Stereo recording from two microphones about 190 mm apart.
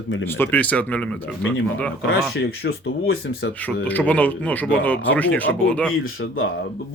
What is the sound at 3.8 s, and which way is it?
Speech, 10° left (ahead or behind).